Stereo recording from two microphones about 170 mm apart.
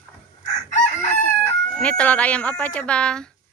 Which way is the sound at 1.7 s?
5° left (ahead or behind).